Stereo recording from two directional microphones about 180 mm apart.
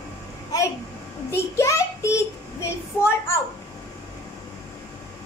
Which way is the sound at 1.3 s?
15° left (ahead or behind).